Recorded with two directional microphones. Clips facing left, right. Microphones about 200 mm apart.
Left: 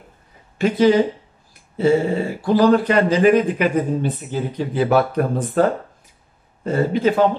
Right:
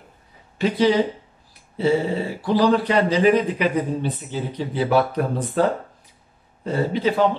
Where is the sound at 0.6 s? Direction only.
50° left (ahead or behind).